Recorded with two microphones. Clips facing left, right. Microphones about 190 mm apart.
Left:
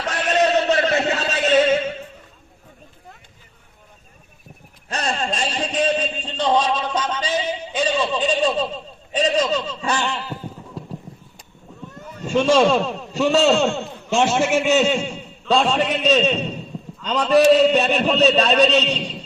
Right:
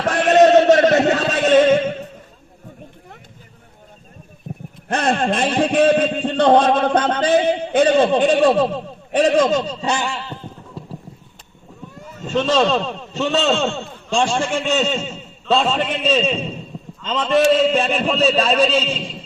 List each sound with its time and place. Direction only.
0.0 s a sound: 50° right (ahead or behind)
4.5 s a sound: 45° right (ahead or behind)
4.9 s speech: 55° right (ahead or behind)
10.1 s clip-clop: centre (ahead or behind)
11.9 s boat: 5° right (ahead or behind)
12.3 s a man's voice: 10° left (ahead or behind)